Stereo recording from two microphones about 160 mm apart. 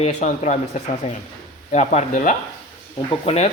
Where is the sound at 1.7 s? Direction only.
45° left (ahead or behind).